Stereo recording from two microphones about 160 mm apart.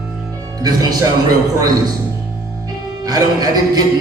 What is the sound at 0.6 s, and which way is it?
A man's voice, 25° right (ahead or behind).